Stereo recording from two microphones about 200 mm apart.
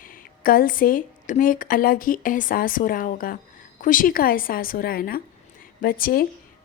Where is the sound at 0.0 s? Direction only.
45° left (ahead or behind).